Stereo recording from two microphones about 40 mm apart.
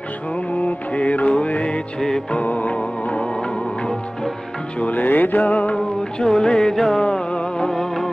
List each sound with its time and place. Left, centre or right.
0.7 s music: left
2.0 s music: centre
2.3 s music: left
4.7 s music: left
6.1 s music: centre